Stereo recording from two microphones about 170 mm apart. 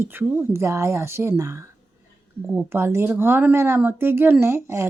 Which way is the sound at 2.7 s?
15° right (ahead or behind).